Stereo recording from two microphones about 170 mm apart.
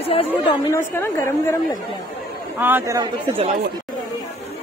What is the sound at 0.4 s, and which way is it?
Speech, 25° left (ahead or behind).